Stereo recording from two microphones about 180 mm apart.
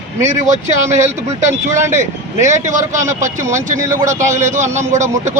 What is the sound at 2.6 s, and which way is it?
Speech, 40° right (ahead or behind).